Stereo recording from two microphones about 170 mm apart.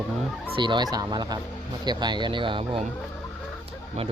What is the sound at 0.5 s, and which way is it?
Speech, 25° right (ahead or behind).